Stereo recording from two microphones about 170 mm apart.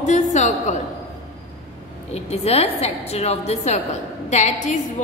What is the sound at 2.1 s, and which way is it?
A woman's voice, 40° left (ahead or behind).